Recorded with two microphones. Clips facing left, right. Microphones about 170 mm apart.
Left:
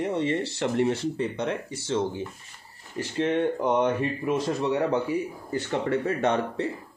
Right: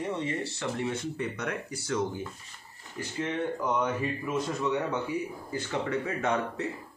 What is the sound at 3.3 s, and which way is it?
Speech, 25° left (ahead or behind).